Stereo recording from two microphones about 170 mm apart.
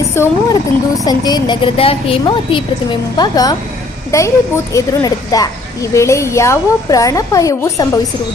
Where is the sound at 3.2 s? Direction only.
20° left (ahead or behind).